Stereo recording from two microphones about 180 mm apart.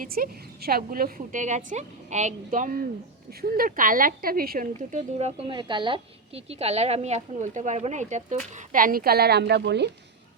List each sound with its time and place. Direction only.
0.0 s a woman's voice: 55° right (ahead or behind); by 9.9 s 70° right (ahead or behind)